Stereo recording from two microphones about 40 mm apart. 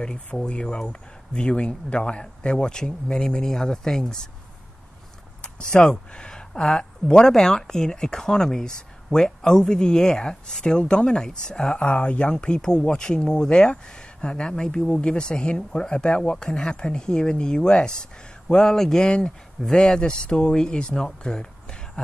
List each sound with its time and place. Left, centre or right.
0.0 s speech: left
3.4 s speech: centre
5.4 s speech: left
19.0 s speech: left
19.6 s speech: centre
19.9 s speech: left